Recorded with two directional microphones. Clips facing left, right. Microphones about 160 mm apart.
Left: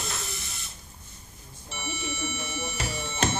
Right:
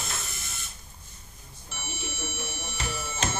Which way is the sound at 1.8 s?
Centre (ahead or behind).